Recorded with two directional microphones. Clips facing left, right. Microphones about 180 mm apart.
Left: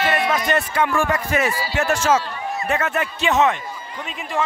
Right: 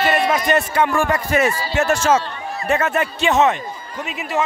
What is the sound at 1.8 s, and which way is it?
Speech, 45° right (ahead or behind).